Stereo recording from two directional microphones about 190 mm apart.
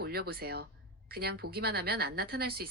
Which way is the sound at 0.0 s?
55° right (ahead or behind).